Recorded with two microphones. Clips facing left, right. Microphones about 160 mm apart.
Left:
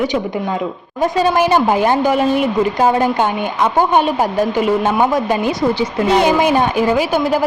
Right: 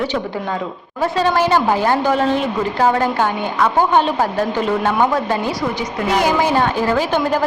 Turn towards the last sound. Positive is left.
turn(degrees=10)  # may be behind; listen again after turning